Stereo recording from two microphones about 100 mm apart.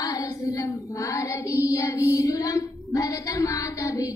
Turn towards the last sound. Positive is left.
turn(degrees=35)  # may be behind; listen again after turning